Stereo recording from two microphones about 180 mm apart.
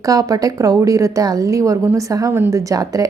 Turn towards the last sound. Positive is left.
turn(degrees=-20)  # may be behind; listen again after turning